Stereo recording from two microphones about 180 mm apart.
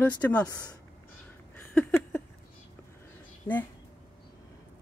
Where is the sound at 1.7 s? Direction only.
15° left (ahead or behind).